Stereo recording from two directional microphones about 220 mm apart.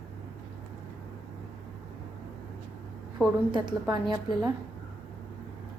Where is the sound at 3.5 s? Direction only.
20° right (ahead or behind).